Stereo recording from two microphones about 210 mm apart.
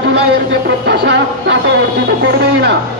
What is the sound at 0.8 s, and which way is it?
Speech, 50° right (ahead or behind).